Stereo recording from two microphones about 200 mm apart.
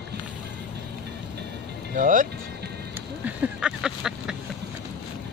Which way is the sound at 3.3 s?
5° right (ahead or behind).